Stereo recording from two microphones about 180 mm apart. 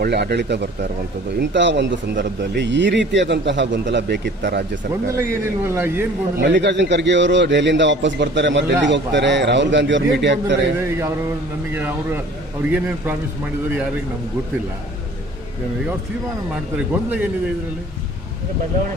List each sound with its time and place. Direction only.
0.0 s a man's voice: 65° right (ahead or behind)
5.2 s speech: 15° right (ahead or behind)
6.4 s speech: 75° right (ahead or behind)
10.8 s speech: 15° right (ahead or behind)
16.7 s speech: 10° right (ahead or behind)